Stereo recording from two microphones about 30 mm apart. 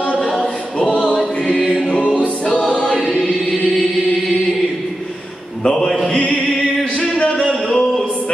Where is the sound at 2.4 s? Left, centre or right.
Left.